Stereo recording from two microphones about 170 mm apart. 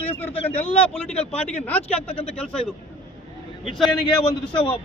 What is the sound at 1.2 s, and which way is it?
A man's voice, 10° left (ahead or behind).